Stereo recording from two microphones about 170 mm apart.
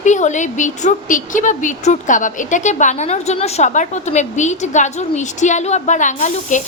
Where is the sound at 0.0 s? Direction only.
45° left (ahead or behind).